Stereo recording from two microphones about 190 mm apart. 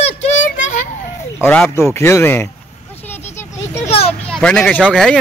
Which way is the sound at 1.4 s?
10° left (ahead or behind).